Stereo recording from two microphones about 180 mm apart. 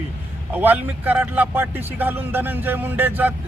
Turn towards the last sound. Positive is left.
turn(degrees=-10)  # may be behind; listen again after turning